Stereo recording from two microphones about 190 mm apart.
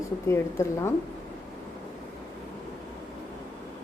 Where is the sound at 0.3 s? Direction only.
15° left (ahead or behind).